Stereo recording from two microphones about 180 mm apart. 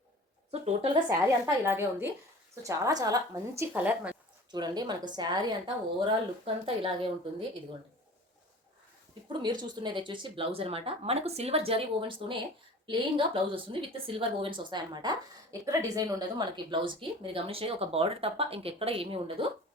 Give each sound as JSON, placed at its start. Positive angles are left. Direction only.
{"t": 1.5, "sound": "a woman's voice", "side_deg": -15}
{"t": 3.7, "sound": "a woman's voice", "side_deg": -5}
{"t": 4.5, "sound": "a woman's voice", "side_deg": -25}
{"t": 9.4, "sound": "a woman's voice", "side_deg": -25}